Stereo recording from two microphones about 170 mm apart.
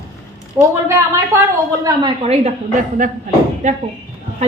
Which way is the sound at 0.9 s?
15° right (ahead or behind).